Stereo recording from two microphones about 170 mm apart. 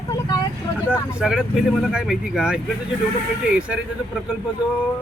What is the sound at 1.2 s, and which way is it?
Speech, 5° right (ahead or behind).